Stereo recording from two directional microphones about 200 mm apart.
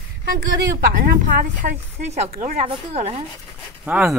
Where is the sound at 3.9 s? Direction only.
5° right (ahead or behind).